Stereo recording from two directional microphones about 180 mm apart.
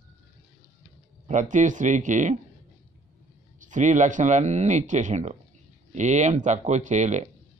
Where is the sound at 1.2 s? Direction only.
45° right (ahead or behind).